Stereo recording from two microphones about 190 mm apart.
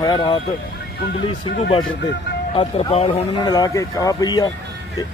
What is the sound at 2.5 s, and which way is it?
Speech, 30° left (ahead or behind).